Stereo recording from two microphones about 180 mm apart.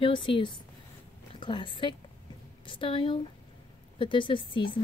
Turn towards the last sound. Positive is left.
turn(degrees=25)  # may be behind; listen again after turning